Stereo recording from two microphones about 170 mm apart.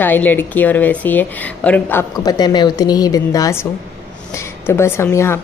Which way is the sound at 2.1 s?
25° left (ahead or behind).